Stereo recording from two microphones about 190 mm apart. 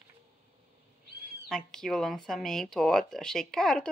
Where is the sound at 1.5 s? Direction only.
5° left (ahead or behind).